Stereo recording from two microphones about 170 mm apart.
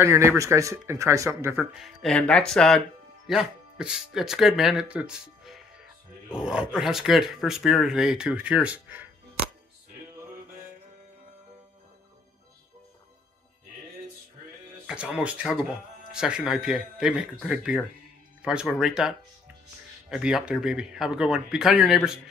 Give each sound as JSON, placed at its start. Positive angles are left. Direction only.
{"t": 0.0, "sound": "speech", "side_deg": -15}
{"t": 1.7, "sound": "speech", "side_deg": 0}
{"t": 14.9, "sound": "speech", "side_deg": -5}